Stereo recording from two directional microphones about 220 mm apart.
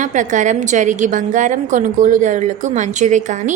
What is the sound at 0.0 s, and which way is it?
A woman's voice, 35° right (ahead or behind).